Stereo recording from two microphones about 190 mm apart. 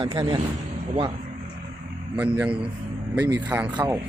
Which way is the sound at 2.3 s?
5° right (ahead or behind).